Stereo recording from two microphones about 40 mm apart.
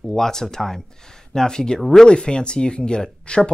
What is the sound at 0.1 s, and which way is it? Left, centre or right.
Speech, centre.